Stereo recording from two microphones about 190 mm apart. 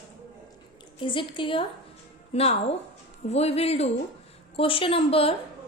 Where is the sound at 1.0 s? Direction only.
25° left (ahead or behind).